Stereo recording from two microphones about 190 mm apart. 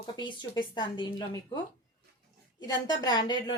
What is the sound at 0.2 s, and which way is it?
Speech, 25° left (ahead or behind).